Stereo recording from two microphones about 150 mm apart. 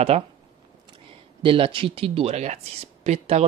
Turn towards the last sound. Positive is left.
turn(degrees=-45)  # may be behind; listen again after turning